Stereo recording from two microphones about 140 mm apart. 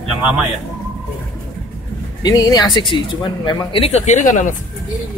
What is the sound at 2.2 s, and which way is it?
Speech, 25° left (ahead or behind).